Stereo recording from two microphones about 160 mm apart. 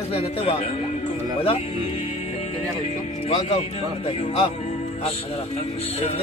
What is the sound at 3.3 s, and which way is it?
Speech, 40° left (ahead or behind).